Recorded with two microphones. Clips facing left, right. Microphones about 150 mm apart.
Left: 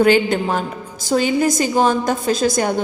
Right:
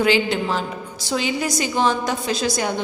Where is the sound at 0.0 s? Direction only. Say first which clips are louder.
Left 4 dB; 50° left (ahead or behind).